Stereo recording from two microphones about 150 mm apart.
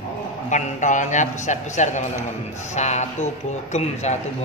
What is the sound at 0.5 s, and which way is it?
A man's voice, 55° left (ahead or behind).